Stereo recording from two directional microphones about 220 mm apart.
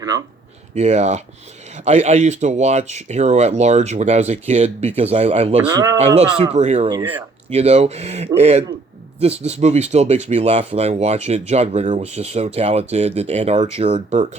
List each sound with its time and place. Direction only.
0.7 s speech: 30° right (ahead or behind)
5.6 s speech: 15° right (ahead or behind)
6.1 s speech: 30° right (ahead or behind)